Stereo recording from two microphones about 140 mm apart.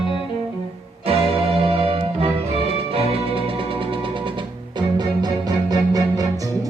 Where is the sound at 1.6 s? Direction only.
45° right (ahead or behind).